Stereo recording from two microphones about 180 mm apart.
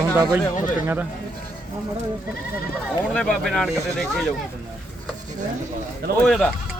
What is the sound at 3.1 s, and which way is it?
Speech, 5° left (ahead or behind).